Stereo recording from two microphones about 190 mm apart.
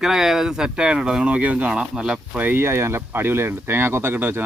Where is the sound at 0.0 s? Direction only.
Centre (ahead or behind).